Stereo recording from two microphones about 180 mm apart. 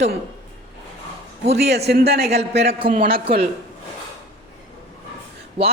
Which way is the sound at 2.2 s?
35° right (ahead or behind).